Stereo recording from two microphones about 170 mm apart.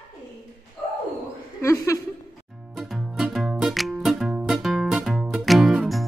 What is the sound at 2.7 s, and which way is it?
Music, centre (ahead or behind).